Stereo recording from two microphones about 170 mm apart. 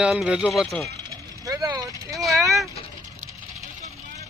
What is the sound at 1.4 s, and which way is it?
Vehicle, 20° right (ahead or behind).